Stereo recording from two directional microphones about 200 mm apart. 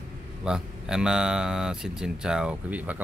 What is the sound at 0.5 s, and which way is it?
Speech, 5° right (ahead or behind).